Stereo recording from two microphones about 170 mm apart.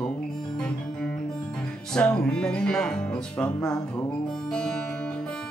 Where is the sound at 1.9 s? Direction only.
5° left (ahead or behind).